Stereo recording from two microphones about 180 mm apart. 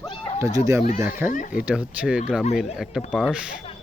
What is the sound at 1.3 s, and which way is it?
Speech, 45° left (ahead or behind).